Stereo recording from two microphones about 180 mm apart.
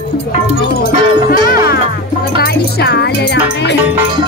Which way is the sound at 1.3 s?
55° left (ahead or behind).